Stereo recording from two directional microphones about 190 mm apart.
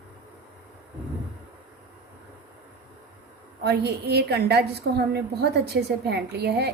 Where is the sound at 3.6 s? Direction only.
60° right (ahead or behind).